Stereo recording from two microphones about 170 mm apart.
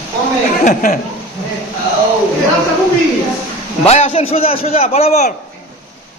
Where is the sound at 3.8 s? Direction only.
40° left (ahead or behind).